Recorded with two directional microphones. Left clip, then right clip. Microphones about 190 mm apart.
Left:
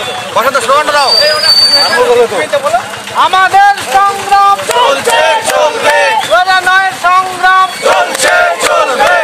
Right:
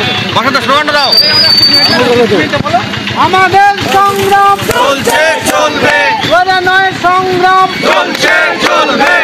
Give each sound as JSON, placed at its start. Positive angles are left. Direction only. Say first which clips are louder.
{"t": 0.4, "sound": "a man's voice", "louder": "left 2 dB", "side_deg": 15}
{"t": 3.2, "sound": "a man's voice", "louder": "even", "side_deg": 20}
{"t": 6.3, "sound": "speech", "louder": "even", "side_deg": -5}